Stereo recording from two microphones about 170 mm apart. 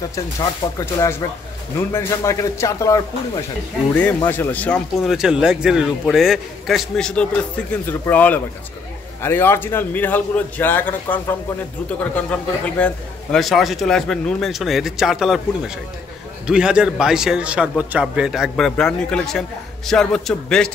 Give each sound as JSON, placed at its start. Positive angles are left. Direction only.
{"t": 0.7, "sound": "a man's voice", "side_deg": 20}
{"t": 3.9, "sound": "a man's voice", "side_deg": 10}
{"t": 5.1, "sound": "a man's voice", "side_deg": -5}